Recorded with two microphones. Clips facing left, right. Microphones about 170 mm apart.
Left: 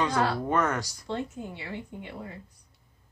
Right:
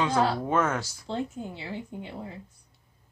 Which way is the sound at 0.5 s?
5° right (ahead or behind).